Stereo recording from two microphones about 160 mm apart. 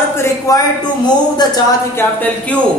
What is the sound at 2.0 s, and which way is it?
Speech, 10° left (ahead or behind).